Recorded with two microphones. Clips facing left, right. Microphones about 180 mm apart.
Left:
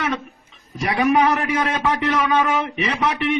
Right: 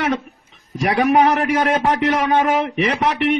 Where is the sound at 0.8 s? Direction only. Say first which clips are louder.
Right 2 dB; 60° right (ahead or behind).